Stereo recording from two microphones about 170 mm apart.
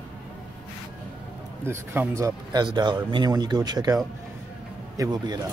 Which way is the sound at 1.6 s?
15° right (ahead or behind).